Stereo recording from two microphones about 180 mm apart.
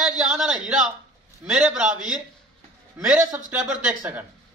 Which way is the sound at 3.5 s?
5° right (ahead or behind).